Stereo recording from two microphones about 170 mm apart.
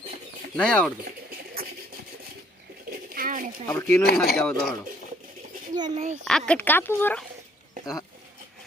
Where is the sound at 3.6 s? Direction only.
15° left (ahead or behind).